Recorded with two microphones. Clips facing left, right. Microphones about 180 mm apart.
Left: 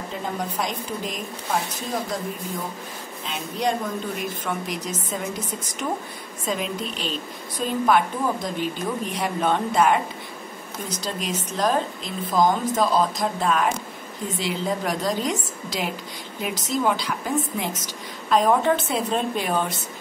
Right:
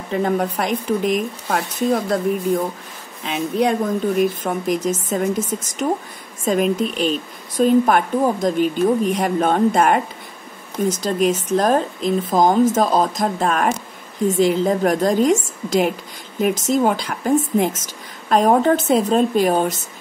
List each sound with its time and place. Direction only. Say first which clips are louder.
0.1 s speech: right 12 dB; 65° right (ahead or behind)
4.4 s a woman's voice: right 8 dB; 45° right (ahead or behind)